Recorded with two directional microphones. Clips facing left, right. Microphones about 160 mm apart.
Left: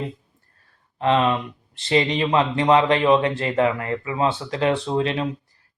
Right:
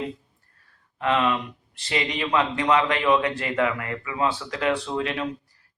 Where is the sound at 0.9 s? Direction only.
30° left (ahead or behind).